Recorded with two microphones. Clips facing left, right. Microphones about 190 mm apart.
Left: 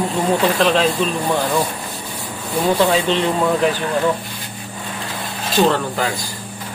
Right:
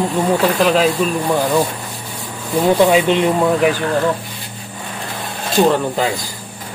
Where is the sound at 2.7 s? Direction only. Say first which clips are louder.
Right 5 dB; 15° right (ahead or behind).